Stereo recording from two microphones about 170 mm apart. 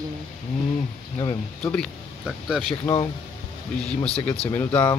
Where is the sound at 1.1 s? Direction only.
25° left (ahead or behind).